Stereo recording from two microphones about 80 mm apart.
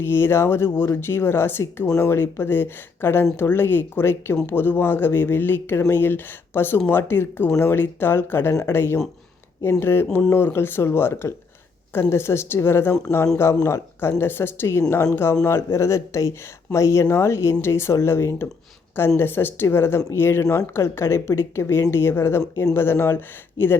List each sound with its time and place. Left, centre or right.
0.0 s speech: left